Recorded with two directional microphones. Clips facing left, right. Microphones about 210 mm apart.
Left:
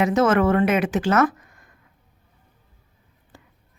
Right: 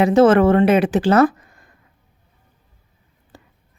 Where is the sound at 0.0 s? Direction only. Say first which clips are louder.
Right 6 dB; 30° right (ahead or behind).